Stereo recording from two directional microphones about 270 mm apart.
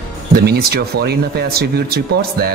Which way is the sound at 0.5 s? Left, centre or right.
Right.